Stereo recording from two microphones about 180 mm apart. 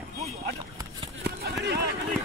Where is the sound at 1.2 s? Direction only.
65° right (ahead or behind).